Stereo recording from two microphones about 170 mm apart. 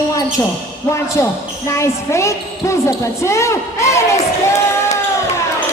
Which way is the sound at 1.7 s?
15° left (ahead or behind).